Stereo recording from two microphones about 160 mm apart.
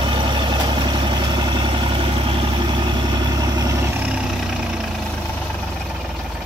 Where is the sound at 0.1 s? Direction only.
30° right (ahead or behind).